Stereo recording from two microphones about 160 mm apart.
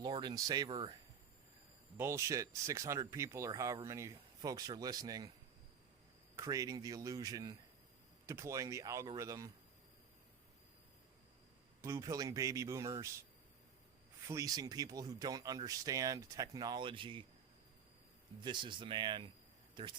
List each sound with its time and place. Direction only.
0.0 s speech: 25° right (ahead or behind)
2.0 s speech: 15° right (ahead or behind)
6.3 s speech: 20° right (ahead or behind)
11.8 s speech: 20° right (ahead or behind)
14.3 s speech: 20° right (ahead or behind)
18.4 s speech: 30° right (ahead or behind)